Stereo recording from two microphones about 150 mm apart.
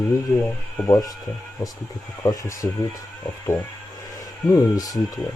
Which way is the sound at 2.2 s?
25° left (ahead or behind).